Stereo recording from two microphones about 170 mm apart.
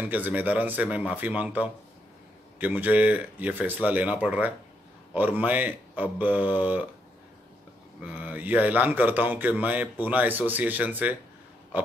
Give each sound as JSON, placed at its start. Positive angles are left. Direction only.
{"t": 0.0, "sound": "speech", "side_deg": -10}
{"t": 8.0, "sound": "speech", "side_deg": -10}
{"t": 11.7, "sound": "a sound", "side_deg": -10}